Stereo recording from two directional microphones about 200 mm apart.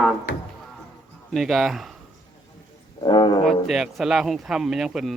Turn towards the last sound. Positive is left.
turn(degrees=0)  # may be behind; listen again after turning